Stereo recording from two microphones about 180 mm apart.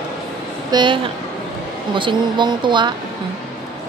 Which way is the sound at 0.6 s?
25° right (ahead or behind).